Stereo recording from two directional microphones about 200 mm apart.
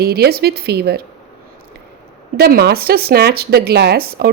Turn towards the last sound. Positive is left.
turn(degrees=-50)  # may be behind; listen again after turning